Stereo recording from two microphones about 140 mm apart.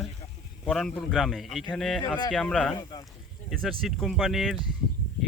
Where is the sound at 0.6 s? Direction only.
5° left (ahead or behind).